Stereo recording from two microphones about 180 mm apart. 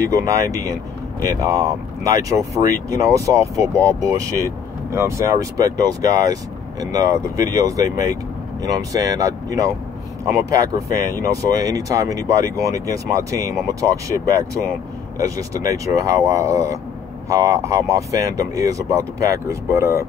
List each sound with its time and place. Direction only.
0.0 s speech: 20° right (ahead or behind)